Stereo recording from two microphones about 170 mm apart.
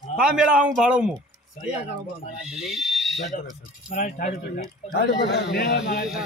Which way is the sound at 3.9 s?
50° left (ahead or behind).